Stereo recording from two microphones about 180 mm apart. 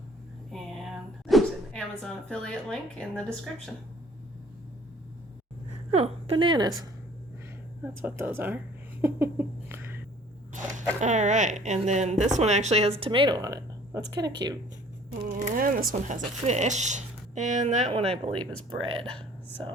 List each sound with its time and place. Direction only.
0.5 s a sound: centre (ahead or behind)
5.9 s a woman's voice: 35° right (ahead or behind)
8.0 s speech: 10° right (ahead or behind)
10.5 s a sound: 45° right (ahead or behind)
11.0 s speech: 40° right (ahead or behind)
13.0 s speech: 25° right (ahead or behind)
15.2 s speech: 45° right (ahead or behind); by 19.0 s 30° right (ahead or behind)